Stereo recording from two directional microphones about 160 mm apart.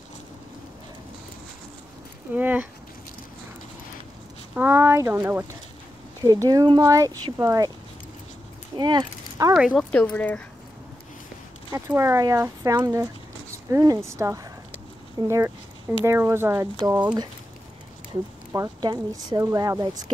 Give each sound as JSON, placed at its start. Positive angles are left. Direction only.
{"t": 2.3, "sound": "speech", "side_deg": -10}
{"t": 4.6, "sound": "speech", "side_deg": -15}
{"t": 8.7, "sound": "speech", "side_deg": -25}
{"t": 9.7, "sound": "speech", "side_deg": 5}
{"t": 11.7, "sound": "speech", "side_deg": -15}
{"t": 18.5, "sound": "speech", "side_deg": -25}